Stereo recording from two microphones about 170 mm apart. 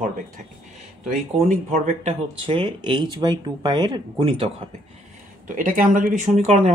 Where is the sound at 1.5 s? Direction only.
40° right (ahead or behind).